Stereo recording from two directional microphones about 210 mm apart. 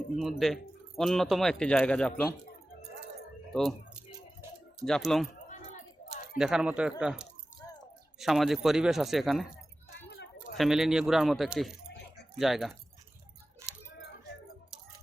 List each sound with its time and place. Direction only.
0.2 s speech: centre (ahead or behind)
3.5 s speech: centre (ahead or behind)
4.4 s typing: centre (ahead or behind)
6.4 s speech: 5° right (ahead or behind)
10.1 s a sound: 50° left (ahead or behind)
10.6 s speech: centre (ahead or behind)
13.6 s a sound: 15° right (ahead or behind)